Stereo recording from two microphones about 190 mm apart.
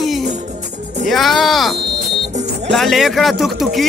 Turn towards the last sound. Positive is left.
turn(degrees=0)  # may be behind; listen again after turning